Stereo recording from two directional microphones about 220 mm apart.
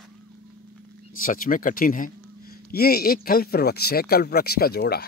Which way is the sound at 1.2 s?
40° left (ahead or behind).